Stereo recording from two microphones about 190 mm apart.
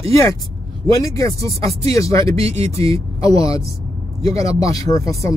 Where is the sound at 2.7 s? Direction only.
15° left (ahead or behind).